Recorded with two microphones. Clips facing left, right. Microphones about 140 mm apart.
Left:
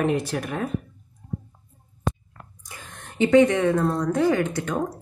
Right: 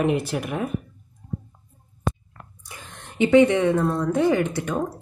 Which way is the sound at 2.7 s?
20° right (ahead or behind).